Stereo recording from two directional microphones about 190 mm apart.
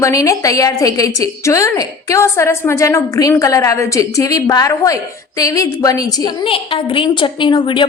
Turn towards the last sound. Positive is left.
turn(degrees=25)  # may be behind; listen again after turning